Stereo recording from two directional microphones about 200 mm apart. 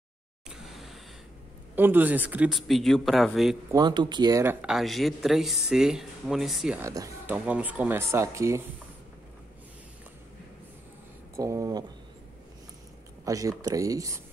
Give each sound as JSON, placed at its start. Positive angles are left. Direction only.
{"t": 0.5, "sound": "a sound", "side_deg": 0}
{"t": 1.8, "sound": "speech", "side_deg": -10}
{"t": 3.7, "sound": "speech", "side_deg": -20}
{"t": 6.8, "sound": "speech", "side_deg": -15}
{"t": 11.3, "sound": "speech", "side_deg": -15}
{"t": 13.2, "sound": "speech", "side_deg": -15}